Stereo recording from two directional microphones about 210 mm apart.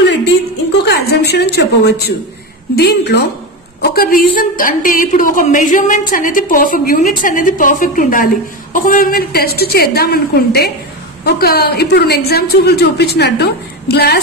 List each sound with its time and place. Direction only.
0.8 s a woman's voice: 50° left (ahead or behind)